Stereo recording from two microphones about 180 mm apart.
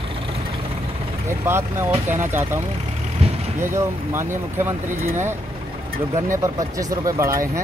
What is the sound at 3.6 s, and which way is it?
Speech, 15° right (ahead or behind).